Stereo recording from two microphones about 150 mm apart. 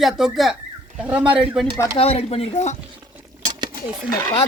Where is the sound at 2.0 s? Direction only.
40° left (ahead or behind).